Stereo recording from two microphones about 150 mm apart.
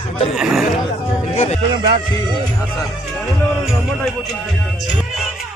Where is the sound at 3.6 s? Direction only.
Centre (ahead or behind).